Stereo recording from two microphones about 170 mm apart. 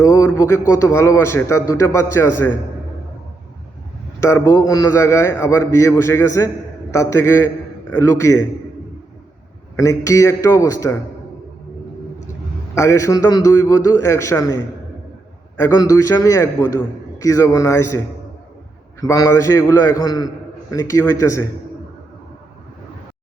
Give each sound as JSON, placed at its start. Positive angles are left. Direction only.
{"t": 0.0, "sound": "a man's voice", "side_deg": 20}
{"t": 4.2, "sound": "a man's voice", "side_deg": 15}
{"t": 9.7, "sound": "a man's voice", "side_deg": 20}
{"t": 12.7, "sound": "a man's voice", "side_deg": 15}
{"t": 19.0, "sound": "a man's voice", "side_deg": 20}